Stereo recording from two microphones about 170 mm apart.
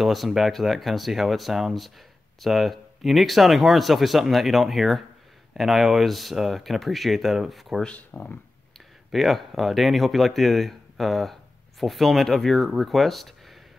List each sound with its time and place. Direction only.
0.0 s speech: centre (ahead or behind)